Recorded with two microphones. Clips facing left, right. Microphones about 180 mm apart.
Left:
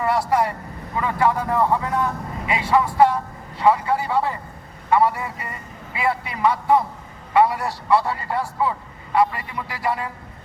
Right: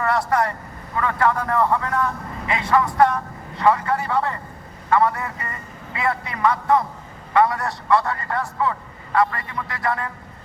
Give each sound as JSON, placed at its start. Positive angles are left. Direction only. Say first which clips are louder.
{"t": 0.0, "sound": "a man's voice", "louder": "left 1 dB", "side_deg": 10}